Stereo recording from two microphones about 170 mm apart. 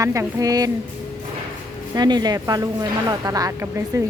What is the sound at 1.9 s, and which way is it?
A woman's voice, 25° right (ahead or behind).